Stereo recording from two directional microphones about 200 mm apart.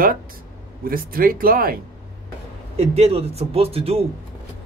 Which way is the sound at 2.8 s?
30° right (ahead or behind).